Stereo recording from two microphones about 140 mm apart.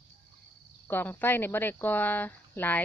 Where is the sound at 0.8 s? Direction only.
15° left (ahead or behind).